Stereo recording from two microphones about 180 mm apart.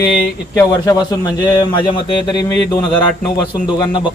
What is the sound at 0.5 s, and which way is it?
Speech, 20° left (ahead or behind).